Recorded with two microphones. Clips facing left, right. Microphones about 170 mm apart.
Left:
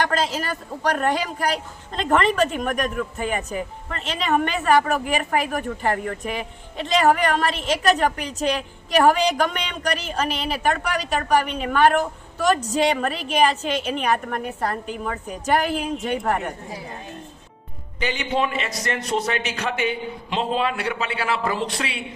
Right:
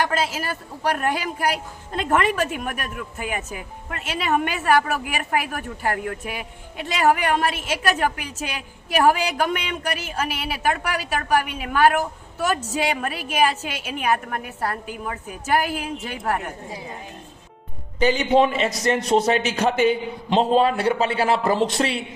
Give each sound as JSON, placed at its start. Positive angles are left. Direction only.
{"t": 0.0, "sound": "speech", "side_deg": -5}
{"t": 18.0, "sound": "a man's voice", "side_deg": -35}